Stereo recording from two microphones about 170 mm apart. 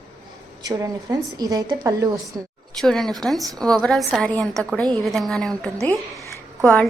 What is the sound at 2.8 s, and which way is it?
A woman's voice, centre (ahead or behind).